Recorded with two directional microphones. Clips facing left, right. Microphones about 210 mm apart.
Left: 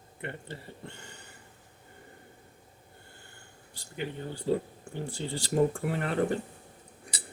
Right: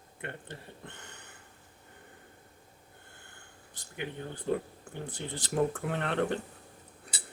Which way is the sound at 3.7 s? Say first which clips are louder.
Left 2 dB; 10° left (ahead or behind).